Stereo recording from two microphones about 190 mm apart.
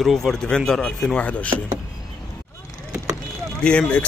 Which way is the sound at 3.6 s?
5° left (ahead or behind).